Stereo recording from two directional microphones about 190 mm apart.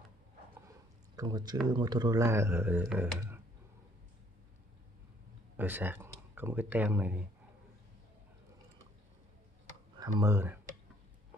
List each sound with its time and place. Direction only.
1.1 s speech: 20° right (ahead or behind)
5.6 s speech: 10° right (ahead or behind)
9.9 s speech: 20° right (ahead or behind)